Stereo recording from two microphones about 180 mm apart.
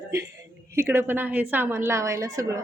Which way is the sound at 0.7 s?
15° right (ahead or behind).